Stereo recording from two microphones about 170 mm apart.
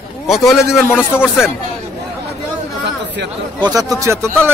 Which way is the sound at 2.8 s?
90° right.